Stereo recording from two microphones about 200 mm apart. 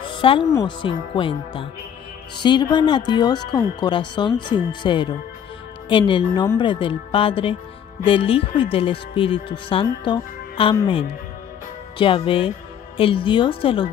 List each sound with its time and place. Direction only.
0.2 s speech: 25° left (ahead or behind)
12.0 s speech: 25° left (ahead or behind)